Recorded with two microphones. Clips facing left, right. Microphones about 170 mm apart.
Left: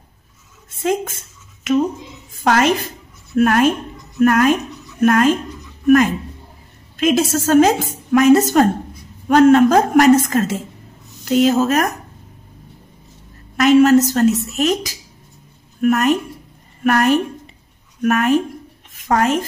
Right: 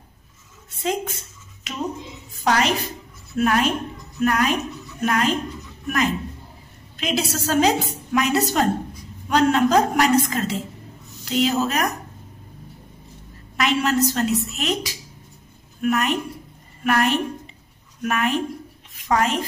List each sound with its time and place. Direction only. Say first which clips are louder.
0.7 s a woman's voice: left 5 dB; 50° left (ahead or behind)
2.3 s a woman's voice: left 5 dB; 50° left (ahead or behind)
7.0 s a woman's voice: left 9 dB; 50° left (ahead or behind)
13.6 s a woman's voice: left 10 dB; 45° left (ahead or behind)